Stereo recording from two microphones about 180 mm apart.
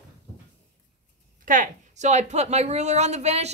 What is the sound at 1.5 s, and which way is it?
A woman's voice, 45° right (ahead or behind).